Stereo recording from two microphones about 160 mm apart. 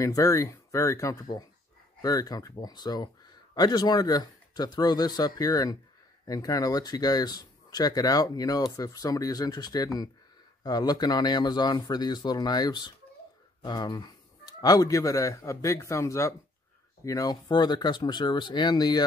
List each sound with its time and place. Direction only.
0.0 s speech: 20° left (ahead or behind)